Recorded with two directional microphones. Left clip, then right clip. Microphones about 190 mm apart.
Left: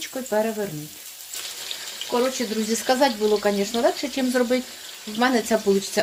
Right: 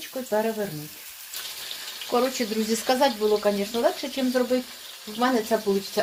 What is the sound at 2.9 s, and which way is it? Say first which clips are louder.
Speech: left 2 dB; 15° left (ahead or behind).